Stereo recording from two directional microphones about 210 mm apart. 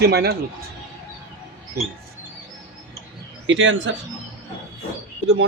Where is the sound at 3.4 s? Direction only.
65° right (ahead or behind).